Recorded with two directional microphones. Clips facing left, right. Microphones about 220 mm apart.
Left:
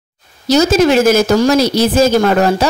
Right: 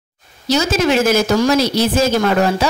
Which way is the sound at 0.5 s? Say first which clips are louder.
Left 5 dB; 40° left (ahead or behind).